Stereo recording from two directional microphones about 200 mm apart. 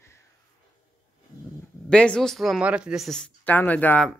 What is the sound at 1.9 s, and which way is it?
Speech, 5° left (ahead or behind).